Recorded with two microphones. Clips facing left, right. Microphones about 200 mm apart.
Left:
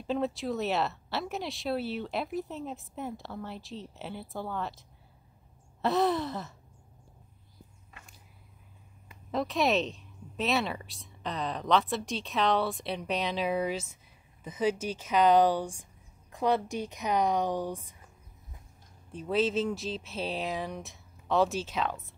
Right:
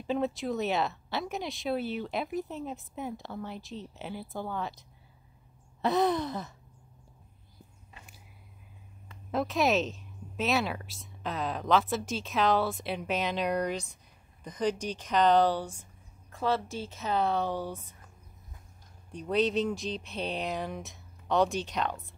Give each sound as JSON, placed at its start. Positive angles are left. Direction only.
{"t": 0.0, "sound": "speech", "side_deg": 0}
{"t": 9.3, "sound": "speech", "side_deg": 0}
{"t": 19.1, "sound": "speech", "side_deg": 5}